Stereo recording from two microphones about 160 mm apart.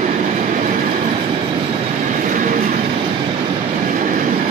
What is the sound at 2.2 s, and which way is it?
Train, 55° right (ahead or behind).